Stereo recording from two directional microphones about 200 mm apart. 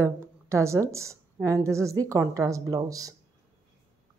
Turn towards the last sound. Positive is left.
turn(degrees=-15)  # may be behind; listen again after turning